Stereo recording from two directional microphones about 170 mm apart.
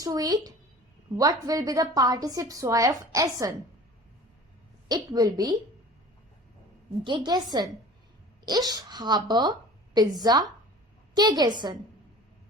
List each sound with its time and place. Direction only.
0.0 s a woman's voice: 20° right (ahead or behind)
4.9 s a woman's voice: 20° right (ahead or behind)
7.0 s a woman's voice: 30° right (ahead or behind)